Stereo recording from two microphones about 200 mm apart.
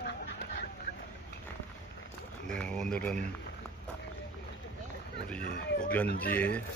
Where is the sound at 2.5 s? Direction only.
5° left (ahead or behind).